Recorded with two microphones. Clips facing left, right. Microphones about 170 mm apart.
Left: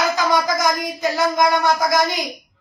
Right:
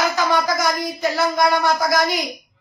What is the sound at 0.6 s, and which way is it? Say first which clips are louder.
Speech: left 1 dB; 20° left (ahead or behind).